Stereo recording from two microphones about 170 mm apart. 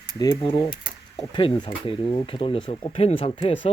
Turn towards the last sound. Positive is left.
turn(degrees=30)  # may be behind; listen again after turning